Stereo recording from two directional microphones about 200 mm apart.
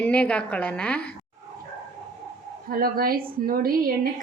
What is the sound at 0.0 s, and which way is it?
A woman's voice, 5° left (ahead or behind).